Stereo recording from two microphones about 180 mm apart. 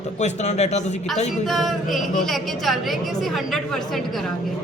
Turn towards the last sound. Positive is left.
turn(degrees=0)  # may be behind; listen again after turning